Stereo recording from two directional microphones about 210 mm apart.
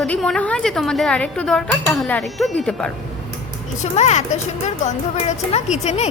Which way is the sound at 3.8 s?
35° left (ahead or behind).